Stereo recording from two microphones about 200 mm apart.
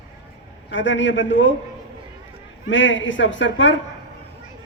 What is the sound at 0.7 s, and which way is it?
Speech, 65° left (ahead or behind).